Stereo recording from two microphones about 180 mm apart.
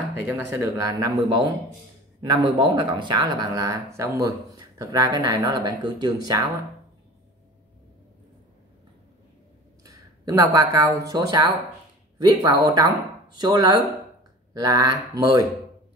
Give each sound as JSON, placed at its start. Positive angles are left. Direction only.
{"t": 0.4, "sound": "speech", "side_deg": -15}
{"t": 10.2, "sound": "speech", "side_deg": -20}